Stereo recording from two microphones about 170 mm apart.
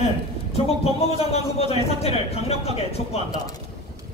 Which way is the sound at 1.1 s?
35° left (ahead or behind).